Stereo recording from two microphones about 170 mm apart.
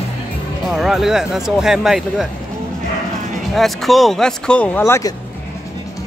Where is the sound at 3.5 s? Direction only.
Centre (ahead or behind).